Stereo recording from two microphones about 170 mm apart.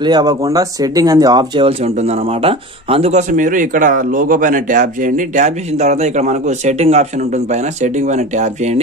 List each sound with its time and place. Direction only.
0.0 s speech: 25° right (ahead or behind)
2.4 s speech: 35° right (ahead or behind)